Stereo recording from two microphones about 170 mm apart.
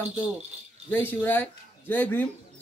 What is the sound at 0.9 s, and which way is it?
Speech, 10° left (ahead or behind).